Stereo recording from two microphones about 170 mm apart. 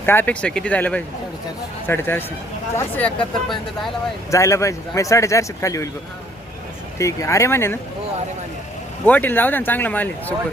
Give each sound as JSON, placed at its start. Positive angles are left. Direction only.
{"t": 0.0, "sound": "speech", "side_deg": 10}
{"t": 4.3, "sound": "speech", "side_deg": 20}
{"t": 7.0, "sound": "speech", "side_deg": 15}
{"t": 9.0, "sound": "speech", "side_deg": 10}